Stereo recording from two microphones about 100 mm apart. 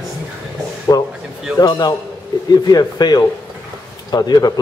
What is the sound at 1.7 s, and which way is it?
A man's voice, 45° left (ahead or behind).